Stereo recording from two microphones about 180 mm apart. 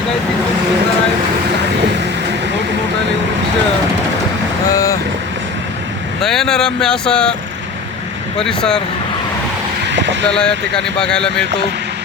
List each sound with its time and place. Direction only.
4.7 s vehicle: 20° left (ahead or behind)
6.2 s speech: centre (ahead or behind)
8.4 s speech: 5° left (ahead or behind)
9.8 s vehicle: 85° right
10.3 s speech: 5° left (ahead or behind)